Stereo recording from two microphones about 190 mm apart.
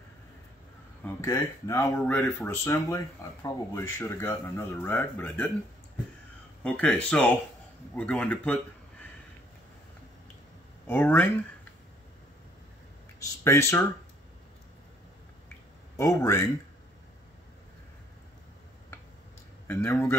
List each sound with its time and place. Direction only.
1.0 s speech: 15° left (ahead or behind)
6.6 s speech: 5° left (ahead or behind)
10.9 s speech: 10° left (ahead or behind)
13.2 s speech: 15° left (ahead or behind)
16.0 s speech: 15° left (ahead or behind)
19.7 s speech: 10° left (ahead or behind)